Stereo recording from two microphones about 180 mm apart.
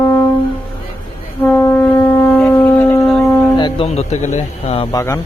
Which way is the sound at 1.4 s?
15° left (ahead or behind).